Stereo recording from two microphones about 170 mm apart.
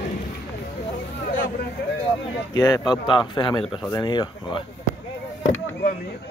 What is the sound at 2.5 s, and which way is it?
Speech, 20° left (ahead or behind).